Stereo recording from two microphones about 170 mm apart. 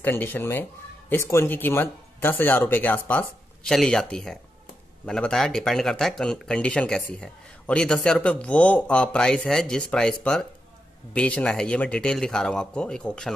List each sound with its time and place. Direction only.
0.0 s speech: 10° left (ahead or behind)